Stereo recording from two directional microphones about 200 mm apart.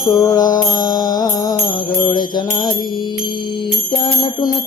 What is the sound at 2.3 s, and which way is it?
Music, 20° left (ahead or behind).